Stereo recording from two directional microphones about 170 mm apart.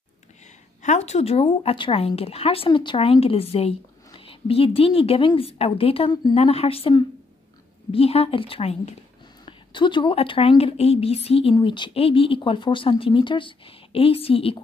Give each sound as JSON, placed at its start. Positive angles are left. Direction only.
{"t": 0.8, "sound": "speech", "side_deg": 40}